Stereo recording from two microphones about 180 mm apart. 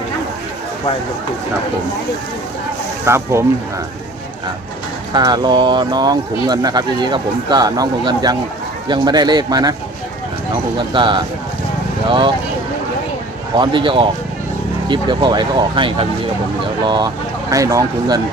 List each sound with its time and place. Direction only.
3.0 s speech: 15° right (ahead or behind)
5.1 s speech: 25° right (ahead or behind)
10.9 s speech: 25° right (ahead or behind)
13.6 s speech: 25° right (ahead or behind)